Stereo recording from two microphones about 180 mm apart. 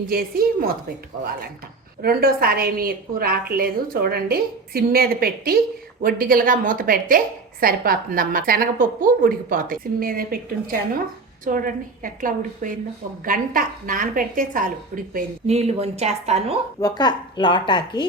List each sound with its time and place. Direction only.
0.1 s a woman's voice: 55° right (ahead or behind)
2.0 s a woman's voice: 55° right (ahead or behind)
15.4 s a woman's voice: 35° right (ahead or behind)
16.8 s a woman's voice: 20° left (ahead or behind)